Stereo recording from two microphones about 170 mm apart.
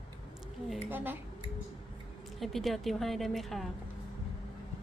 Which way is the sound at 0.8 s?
10° right (ahead or behind).